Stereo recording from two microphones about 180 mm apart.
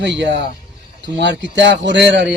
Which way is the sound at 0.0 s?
75° right (ahead or behind).